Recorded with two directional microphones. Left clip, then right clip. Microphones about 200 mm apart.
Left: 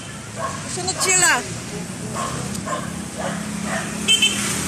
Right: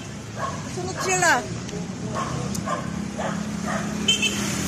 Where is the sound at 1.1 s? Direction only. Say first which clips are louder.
Left 2 dB; 25° right (ahead or behind).